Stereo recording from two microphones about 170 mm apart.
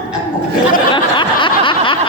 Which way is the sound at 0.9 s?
30° left (ahead or behind).